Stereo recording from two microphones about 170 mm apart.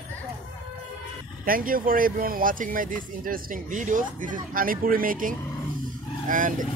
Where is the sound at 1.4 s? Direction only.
55° right (ahead or behind).